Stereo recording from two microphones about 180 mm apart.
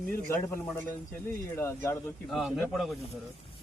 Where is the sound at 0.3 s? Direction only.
15° left (ahead or behind).